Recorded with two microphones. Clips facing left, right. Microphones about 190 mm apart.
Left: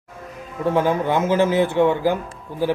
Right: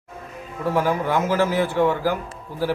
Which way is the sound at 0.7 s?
20° left (ahead or behind).